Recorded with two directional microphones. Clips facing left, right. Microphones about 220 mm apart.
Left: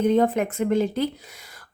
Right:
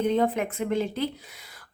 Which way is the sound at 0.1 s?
45° left (ahead or behind).